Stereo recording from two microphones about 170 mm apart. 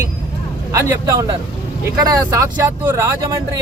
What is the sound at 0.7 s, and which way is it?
Speech, 20° right (ahead or behind).